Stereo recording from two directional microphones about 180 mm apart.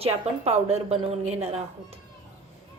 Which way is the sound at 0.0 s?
35° right (ahead or behind).